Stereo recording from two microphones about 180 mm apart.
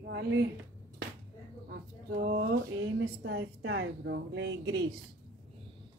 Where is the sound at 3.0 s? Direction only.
80° right.